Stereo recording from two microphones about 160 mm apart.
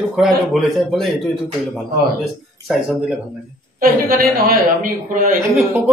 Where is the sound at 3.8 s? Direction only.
65° right (ahead or behind).